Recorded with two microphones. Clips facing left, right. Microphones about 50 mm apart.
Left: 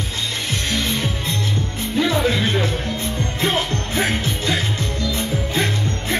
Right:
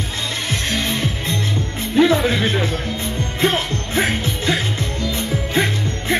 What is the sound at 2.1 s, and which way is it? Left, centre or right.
Speech, centre.